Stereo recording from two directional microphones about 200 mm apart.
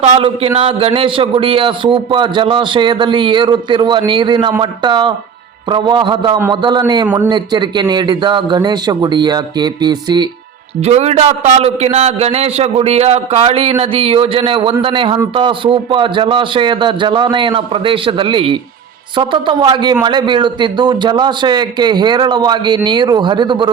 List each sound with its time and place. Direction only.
0.1 s a man's voice: 25° right (ahead or behind)
10.8 s a man's voice: 30° right (ahead or behind)